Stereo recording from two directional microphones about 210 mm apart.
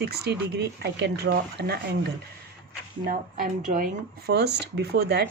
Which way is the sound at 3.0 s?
40° right (ahead or behind).